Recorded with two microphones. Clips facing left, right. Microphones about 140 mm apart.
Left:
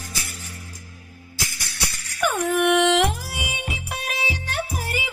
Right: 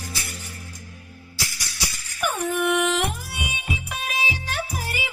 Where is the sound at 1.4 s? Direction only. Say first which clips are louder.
Left 1 dB; 60° left (ahead or behind); by 4.2 s 85° left.